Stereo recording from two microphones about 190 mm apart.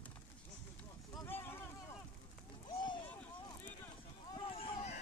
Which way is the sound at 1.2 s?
10° left (ahead or behind).